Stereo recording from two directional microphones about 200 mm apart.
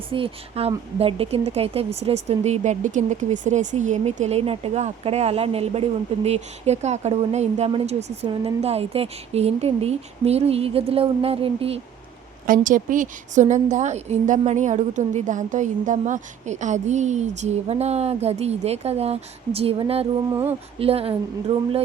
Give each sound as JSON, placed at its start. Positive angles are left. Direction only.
{"t": 0.1, "sound": "speech", "side_deg": -30}
{"t": 12.5, "sound": "speech", "side_deg": -40}